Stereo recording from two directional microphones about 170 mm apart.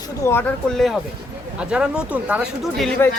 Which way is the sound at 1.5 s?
5° right (ahead or behind).